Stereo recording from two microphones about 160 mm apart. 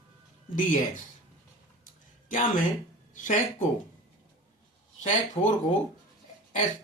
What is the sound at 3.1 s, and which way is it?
Speech, 55° left (ahead or behind).